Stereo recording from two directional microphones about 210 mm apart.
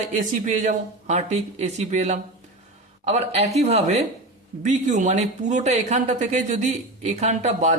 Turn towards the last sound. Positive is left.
turn(degrees=-35)  # may be behind; listen again after turning